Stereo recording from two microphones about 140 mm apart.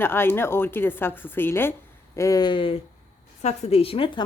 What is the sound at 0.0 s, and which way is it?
A woman's voice, 15° left (ahead or behind).